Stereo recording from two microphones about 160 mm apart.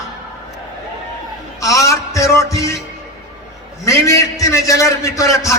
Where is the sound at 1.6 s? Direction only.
20° left (ahead or behind).